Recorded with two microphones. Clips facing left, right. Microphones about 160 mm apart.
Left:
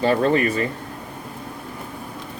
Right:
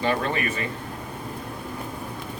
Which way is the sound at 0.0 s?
35° left (ahead or behind).